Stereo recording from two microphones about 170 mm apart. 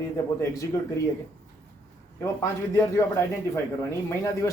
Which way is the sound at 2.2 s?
15° left (ahead or behind).